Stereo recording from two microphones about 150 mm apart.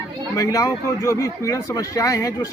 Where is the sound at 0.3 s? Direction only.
25° left (ahead or behind).